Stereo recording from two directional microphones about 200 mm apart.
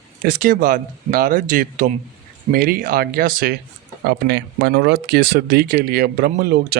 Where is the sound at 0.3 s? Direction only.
45° right (ahead or behind).